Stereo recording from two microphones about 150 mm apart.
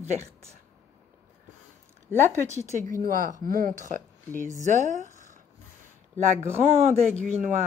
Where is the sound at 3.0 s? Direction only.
70° right (ahead or behind).